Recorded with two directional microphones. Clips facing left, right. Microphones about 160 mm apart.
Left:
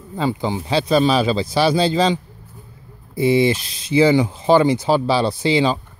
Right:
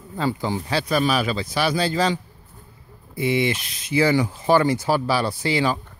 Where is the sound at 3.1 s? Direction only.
30° left (ahead or behind).